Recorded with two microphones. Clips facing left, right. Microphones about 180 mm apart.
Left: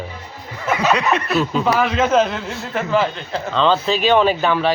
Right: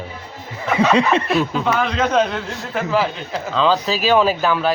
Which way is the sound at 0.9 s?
30° right (ahead or behind).